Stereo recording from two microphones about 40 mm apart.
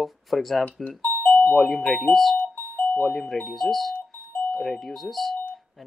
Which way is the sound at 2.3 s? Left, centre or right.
Left.